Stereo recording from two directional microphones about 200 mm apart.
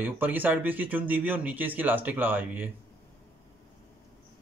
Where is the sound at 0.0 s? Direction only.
10° right (ahead or behind).